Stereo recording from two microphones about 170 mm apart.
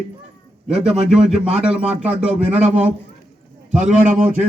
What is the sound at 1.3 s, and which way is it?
A man's voice, 40° right (ahead or behind).